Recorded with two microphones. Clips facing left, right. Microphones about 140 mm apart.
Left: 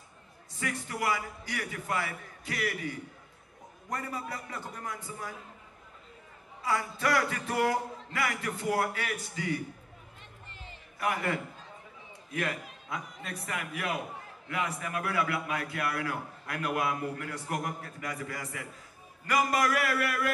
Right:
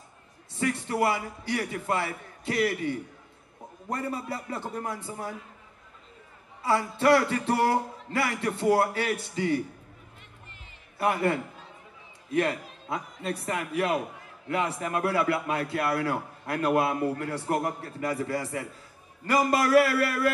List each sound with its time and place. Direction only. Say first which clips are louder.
0.5 s a man's voice: right 7 dB; 30° right (ahead or behind)
6.6 s a man's voice: right 6 dB; 30° right (ahead or behind)
11.0 s a man's voice: right 6 dB; 30° right (ahead or behind)